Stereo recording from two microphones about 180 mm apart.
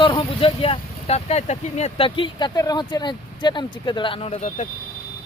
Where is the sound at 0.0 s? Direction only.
30° left (ahead or behind).